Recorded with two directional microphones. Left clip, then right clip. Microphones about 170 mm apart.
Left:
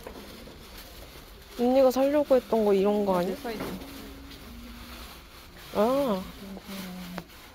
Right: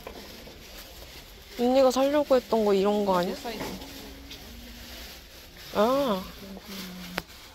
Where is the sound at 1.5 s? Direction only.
10° left (ahead or behind).